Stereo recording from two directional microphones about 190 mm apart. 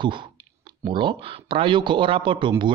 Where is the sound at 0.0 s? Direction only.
25° right (ahead or behind).